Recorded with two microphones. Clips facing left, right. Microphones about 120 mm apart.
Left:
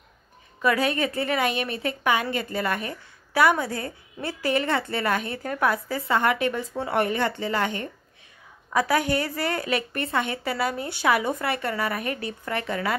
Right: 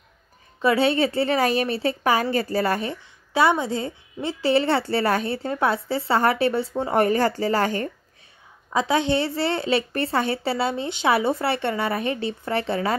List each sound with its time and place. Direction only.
0.6 s a woman's voice: 25° right (ahead or behind)
8.7 s a woman's voice: 25° right (ahead or behind)